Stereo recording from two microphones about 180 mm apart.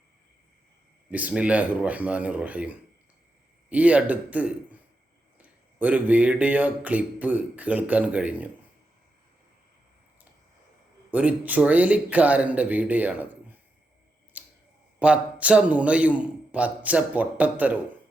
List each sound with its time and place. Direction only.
1.1 s a man's voice: 5° right (ahead or behind)
5.8 s a man's voice: 10° right (ahead or behind)
11.1 s a man's voice: 10° right (ahead or behind)
14.3 s a sound: 10° right (ahead or behind)
14.9 s a man's voice: 5° right (ahead or behind)